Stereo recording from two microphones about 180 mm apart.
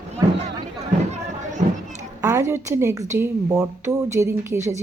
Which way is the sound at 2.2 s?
15° right (ahead or behind).